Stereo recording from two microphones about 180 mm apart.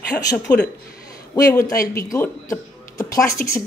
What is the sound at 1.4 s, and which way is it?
Speech, 20° left (ahead or behind).